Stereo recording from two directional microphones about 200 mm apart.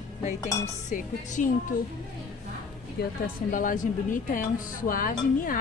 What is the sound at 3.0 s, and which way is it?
Speech, 50° left (ahead or behind).